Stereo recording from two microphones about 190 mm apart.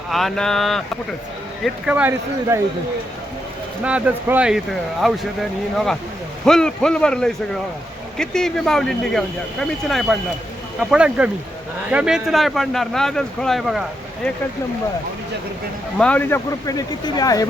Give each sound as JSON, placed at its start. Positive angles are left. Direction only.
{"t": 0.1, "sound": "speech", "side_deg": 0}
{"t": 3.8, "sound": "speech", "side_deg": -5}
{"t": 16.0, "sound": "a man's voice", "side_deg": 5}
{"t": 16.6, "sound": "speech", "side_deg": 20}